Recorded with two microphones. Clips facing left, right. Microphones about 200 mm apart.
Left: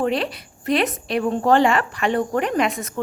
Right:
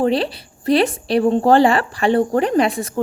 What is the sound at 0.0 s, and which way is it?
A woman's voice, 30° right (ahead or behind).